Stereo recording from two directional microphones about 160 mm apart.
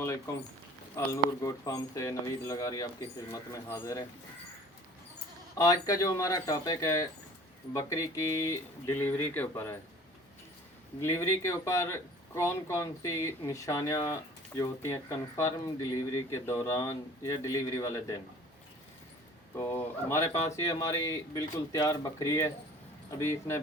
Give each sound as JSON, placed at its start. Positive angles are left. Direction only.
{"t": 0.9, "sound": "speech", "side_deg": 20}
{"t": 5.5, "sound": "speech", "side_deg": 20}
{"t": 11.0, "sound": "speech", "side_deg": 15}
{"t": 19.5, "sound": "speech", "side_deg": 15}